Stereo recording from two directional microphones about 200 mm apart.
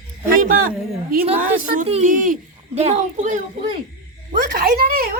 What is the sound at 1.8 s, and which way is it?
A child's voice, 35° right (ahead or behind).